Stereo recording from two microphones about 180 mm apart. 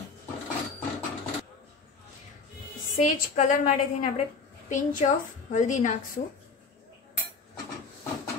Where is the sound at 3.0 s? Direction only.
45° left (ahead or behind).